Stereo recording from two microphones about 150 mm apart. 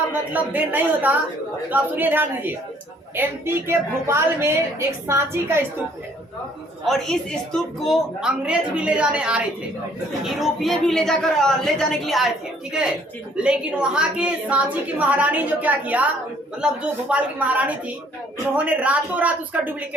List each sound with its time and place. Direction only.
0.1 s a woman's voice: 10° right (ahead or behind)
6.8 s a woman's voice: 5° left (ahead or behind)
13.3 s a woman's voice: 5° right (ahead or behind)